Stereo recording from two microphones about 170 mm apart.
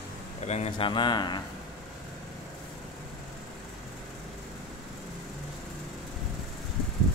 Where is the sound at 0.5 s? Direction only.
35° left (ahead or behind).